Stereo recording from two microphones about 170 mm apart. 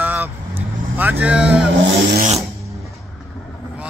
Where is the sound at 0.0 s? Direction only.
10° right (ahead or behind).